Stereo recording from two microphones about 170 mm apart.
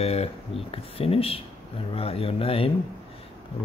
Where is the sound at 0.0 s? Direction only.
35° left (ahead or behind).